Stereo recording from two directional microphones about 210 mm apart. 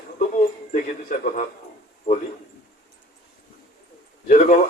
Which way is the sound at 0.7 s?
35° left (ahead or behind).